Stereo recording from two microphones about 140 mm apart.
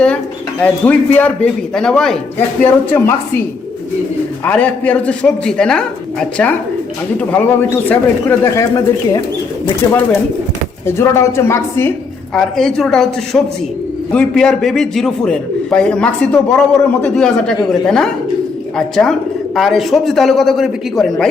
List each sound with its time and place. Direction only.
0.6 s a man's voice: 10° left (ahead or behind)
2.6 s a man's voice: 15° left (ahead or behind)
4.4 s a man's voice: 10° left (ahead or behind)
12.3 s a man's voice: 5° left (ahead or behind)